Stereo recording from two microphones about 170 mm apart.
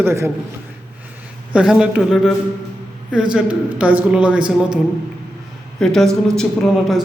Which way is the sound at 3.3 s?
10° right (ahead or behind).